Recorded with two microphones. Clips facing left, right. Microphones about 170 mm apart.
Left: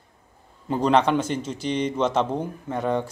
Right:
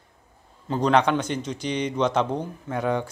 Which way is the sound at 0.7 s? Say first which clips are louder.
Left 1 dB; 5° left (ahead or behind).